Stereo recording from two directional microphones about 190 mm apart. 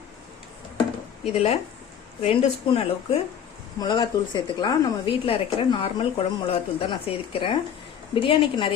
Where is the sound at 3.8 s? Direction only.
20° left (ahead or behind).